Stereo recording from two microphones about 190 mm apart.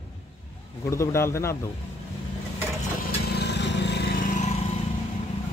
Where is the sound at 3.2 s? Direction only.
60° left (ahead or behind).